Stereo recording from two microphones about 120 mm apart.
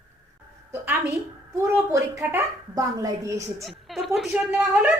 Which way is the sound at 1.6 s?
25° right (ahead or behind).